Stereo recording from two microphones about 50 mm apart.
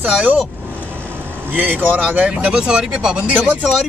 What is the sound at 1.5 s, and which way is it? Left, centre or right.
Speech, right.